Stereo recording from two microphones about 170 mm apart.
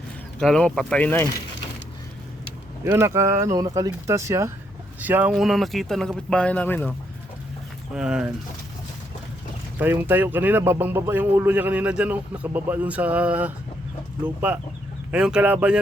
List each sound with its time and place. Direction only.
0.3 s speech: 5° left (ahead or behind)
2.8 s speech: 15° right (ahead or behind); by 6.8 s 10° left (ahead or behind)
7.9 s speech: 5° right (ahead or behind)
9.7 s speech: 10° right (ahead or behind)